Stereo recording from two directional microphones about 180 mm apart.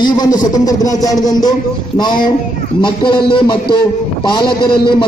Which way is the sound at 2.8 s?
25° left (ahead or behind).